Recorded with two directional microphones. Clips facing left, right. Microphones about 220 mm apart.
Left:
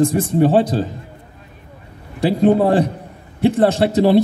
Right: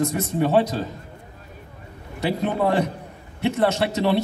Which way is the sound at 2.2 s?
35° left (ahead or behind).